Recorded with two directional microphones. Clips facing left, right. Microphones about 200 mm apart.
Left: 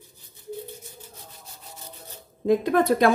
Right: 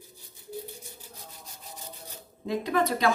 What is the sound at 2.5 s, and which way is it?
Speech, 55° left (ahead or behind).